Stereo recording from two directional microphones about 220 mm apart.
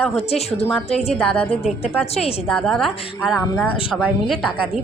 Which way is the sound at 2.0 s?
30° left (ahead or behind).